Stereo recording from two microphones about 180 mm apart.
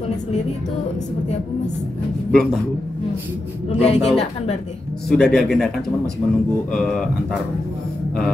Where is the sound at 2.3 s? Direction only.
5° left (ahead or behind).